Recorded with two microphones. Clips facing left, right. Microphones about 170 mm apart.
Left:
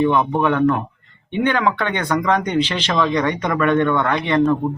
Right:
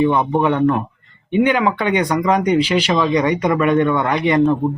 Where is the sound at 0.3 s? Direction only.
15° right (ahead or behind).